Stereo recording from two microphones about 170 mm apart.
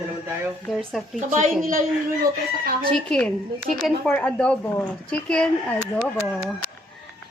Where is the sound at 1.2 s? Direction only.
45° right (ahead or behind).